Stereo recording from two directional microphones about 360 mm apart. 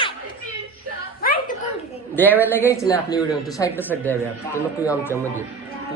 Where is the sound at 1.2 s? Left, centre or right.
Left.